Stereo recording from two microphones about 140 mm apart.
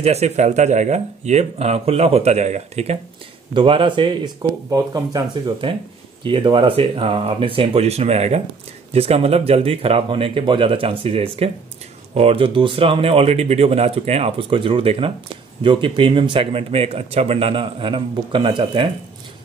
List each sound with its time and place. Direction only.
0.0 s speech: 50° right (ahead or behind)
3.5 s speech: 35° right (ahead or behind)